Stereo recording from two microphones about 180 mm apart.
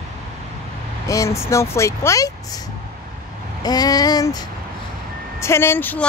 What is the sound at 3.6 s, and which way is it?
Child singing, 20° left (ahead or behind).